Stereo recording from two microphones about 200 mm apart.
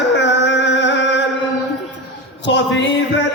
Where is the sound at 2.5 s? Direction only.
65° left (ahead or behind).